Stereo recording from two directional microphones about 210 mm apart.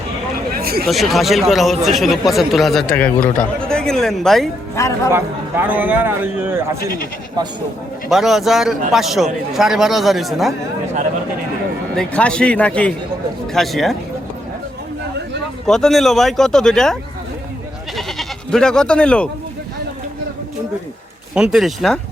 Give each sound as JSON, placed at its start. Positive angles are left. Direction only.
{"t": 0.5, "sound": "a sound", "side_deg": -45}
{"t": 0.9, "sound": "speech", "side_deg": 0}
{"t": 4.7, "sound": "speech", "side_deg": 15}
{"t": 5.1, "sound": "speech", "side_deg": -10}
{"t": 8.1, "sound": "speech", "side_deg": 0}
{"t": 11.9, "sound": "speech", "side_deg": 5}
{"t": 15.6, "sound": "speech", "side_deg": 0}
{"t": 17.9, "sound": "goat", "side_deg": 0}
{"t": 21.3, "sound": "speech", "side_deg": -5}